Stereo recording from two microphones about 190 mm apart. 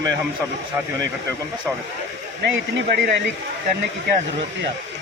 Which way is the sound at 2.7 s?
60° right (ahead or behind).